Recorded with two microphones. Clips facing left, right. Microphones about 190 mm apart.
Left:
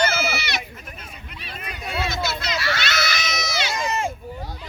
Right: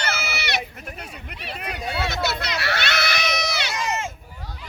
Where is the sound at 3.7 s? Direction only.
35° left (ahead or behind).